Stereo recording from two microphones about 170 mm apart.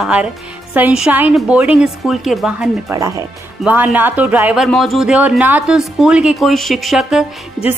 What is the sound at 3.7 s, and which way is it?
Speech, 10° right (ahead or behind).